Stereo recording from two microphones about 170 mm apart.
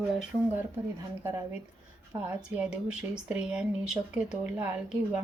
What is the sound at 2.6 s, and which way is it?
Speech, 5° right (ahead or behind).